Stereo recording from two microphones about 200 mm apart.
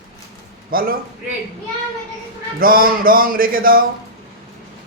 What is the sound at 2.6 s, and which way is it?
Speech, 45° right (ahead or behind).